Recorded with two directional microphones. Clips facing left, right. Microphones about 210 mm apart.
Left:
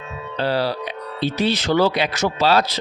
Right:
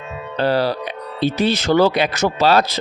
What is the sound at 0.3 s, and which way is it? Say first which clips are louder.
Speech: right 3 dB; 50° right (ahead or behind).